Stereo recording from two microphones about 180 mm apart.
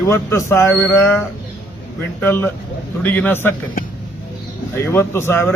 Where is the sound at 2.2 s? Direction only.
10° left (ahead or behind).